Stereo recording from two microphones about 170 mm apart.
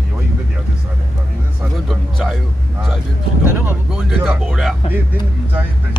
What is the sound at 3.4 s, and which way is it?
Speech, 10° right (ahead or behind).